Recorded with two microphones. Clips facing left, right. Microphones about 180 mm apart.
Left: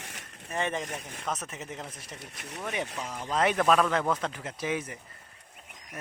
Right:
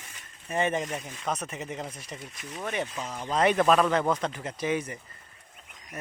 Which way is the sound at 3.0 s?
10° right (ahead or behind).